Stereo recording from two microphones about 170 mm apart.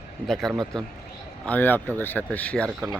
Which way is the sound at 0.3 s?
Centre (ahead or behind).